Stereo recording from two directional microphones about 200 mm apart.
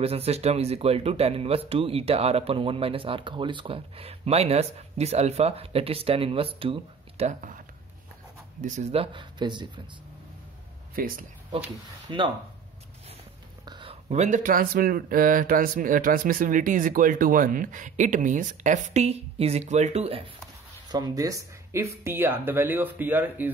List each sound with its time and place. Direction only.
0.0 s speech: 30° right (ahead or behind)
11.0 s speech: 45° right (ahead or behind)
12.1 s speech: 25° right (ahead or behind)
13.7 s speech: 25° right (ahead or behind)
20.9 s speech: 20° right (ahead or behind)